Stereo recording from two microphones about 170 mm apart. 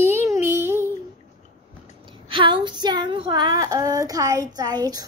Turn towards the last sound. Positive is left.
turn(degrees=-25)  # may be behind; listen again after turning